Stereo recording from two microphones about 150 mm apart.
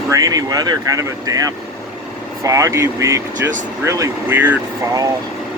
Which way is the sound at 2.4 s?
20° right (ahead or behind).